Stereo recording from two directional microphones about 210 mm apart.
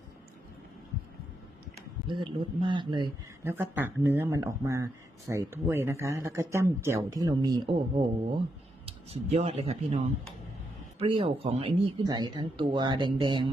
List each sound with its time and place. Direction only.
2.0 s speech: 25° right (ahead or behind)
3.5 s speech: 10° right (ahead or behind)
8.9 s speech: 30° right (ahead or behind)